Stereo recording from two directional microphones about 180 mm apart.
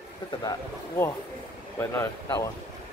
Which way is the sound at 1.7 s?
15° left (ahead or behind).